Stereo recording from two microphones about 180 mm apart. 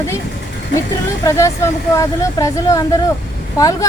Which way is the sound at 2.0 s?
15° left (ahead or behind).